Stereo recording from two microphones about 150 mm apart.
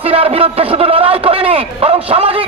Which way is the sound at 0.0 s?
40° right (ahead or behind).